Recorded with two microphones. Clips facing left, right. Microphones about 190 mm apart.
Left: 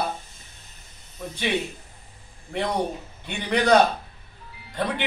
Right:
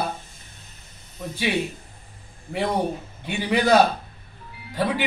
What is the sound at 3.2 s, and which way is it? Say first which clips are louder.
A man's voice: right 1 dB; 5° right (ahead or behind).